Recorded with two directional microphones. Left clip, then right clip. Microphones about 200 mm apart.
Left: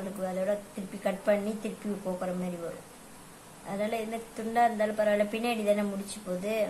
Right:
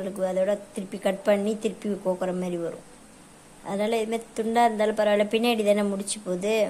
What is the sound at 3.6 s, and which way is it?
A woman's voice, 45° right (ahead or behind).